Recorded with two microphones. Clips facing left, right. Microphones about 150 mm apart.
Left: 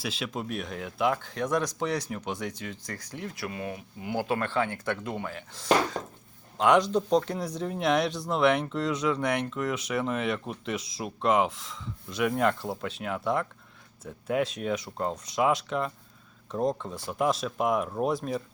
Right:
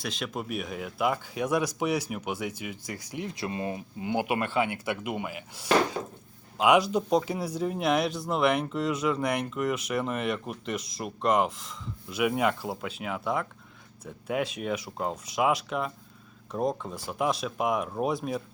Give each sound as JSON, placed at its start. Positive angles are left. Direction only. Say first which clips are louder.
{"t": 0.0, "sound": "speech", "louder": "even", "side_deg": 5}